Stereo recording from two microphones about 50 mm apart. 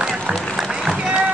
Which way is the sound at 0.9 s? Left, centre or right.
Right.